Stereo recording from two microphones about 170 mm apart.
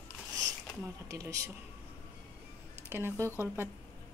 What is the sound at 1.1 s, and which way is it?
Speech, 20° right (ahead or behind).